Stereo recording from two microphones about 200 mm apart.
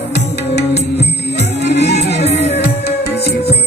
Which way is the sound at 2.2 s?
30° left (ahead or behind).